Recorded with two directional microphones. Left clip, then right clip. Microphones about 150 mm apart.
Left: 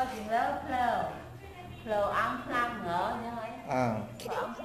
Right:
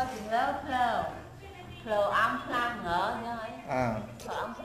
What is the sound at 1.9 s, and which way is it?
A woman's voice, 20° right (ahead or behind).